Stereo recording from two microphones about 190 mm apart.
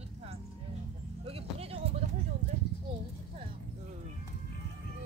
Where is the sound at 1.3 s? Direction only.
30° right (ahead or behind).